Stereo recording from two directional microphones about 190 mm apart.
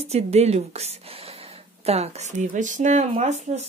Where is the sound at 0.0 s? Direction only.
35° right (ahead or behind).